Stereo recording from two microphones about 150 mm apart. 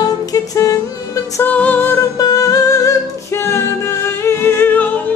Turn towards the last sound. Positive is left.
turn(degrees=15)  # may be behind; listen again after turning